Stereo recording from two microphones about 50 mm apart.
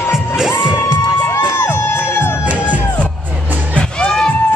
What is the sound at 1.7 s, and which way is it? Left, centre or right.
Music, left.